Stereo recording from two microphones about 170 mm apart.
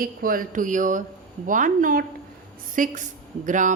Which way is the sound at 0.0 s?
55° right (ahead or behind).